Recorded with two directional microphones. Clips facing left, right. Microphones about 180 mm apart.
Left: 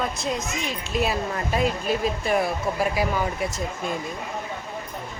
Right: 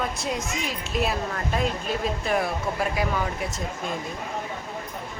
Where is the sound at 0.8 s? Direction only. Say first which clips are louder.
Left 2 dB; centre (ahead or behind).